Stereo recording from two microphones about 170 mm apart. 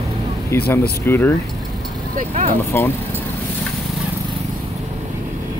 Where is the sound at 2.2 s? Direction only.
50° right (ahead or behind).